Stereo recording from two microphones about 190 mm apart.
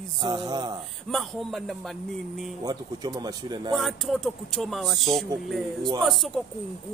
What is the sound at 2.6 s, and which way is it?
Speech, 20° right (ahead or behind).